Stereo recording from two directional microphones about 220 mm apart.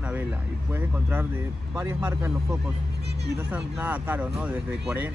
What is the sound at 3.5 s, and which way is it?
Speech, 5° right (ahead or behind).